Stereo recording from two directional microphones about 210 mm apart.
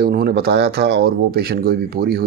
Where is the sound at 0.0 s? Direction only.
45° right (ahead or behind).